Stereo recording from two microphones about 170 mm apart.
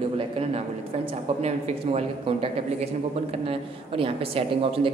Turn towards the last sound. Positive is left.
turn(degrees=-35)  # may be behind; listen again after turning